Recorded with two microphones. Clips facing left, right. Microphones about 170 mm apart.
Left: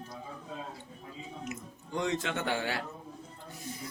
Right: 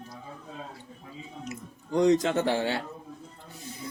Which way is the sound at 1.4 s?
35° right (ahead or behind).